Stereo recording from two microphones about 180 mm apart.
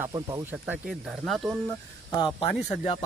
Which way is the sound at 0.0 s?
15° right (ahead or behind).